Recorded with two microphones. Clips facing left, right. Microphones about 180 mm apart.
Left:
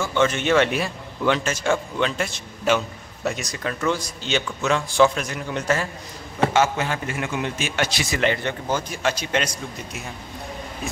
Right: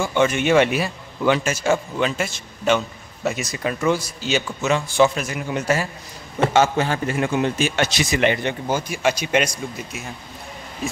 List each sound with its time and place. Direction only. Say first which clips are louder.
0.0 s a man's voice: right 2 dB; 15° right (ahead or behind)
6.5 s a man's voice: right 5 dB; 30° right (ahead or behind); by 9.5 s 10° right (ahead or behind)